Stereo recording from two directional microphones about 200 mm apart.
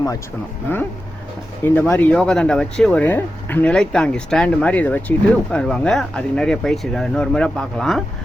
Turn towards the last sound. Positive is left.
turn(degrees=0)  # may be behind; listen again after turning